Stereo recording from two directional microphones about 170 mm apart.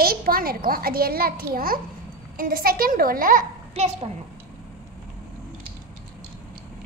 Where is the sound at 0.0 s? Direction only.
60° right (ahead or behind).